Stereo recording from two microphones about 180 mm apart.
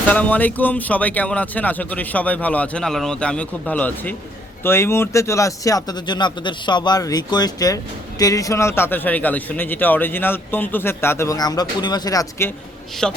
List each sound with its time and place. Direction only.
0.1 s a man's voice: 10° left (ahead or behind)
13.0 s a woman's voice: 5° left (ahead or behind)